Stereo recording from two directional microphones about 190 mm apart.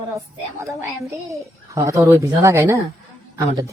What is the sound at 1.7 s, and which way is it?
A woman's voice, 15° right (ahead or behind).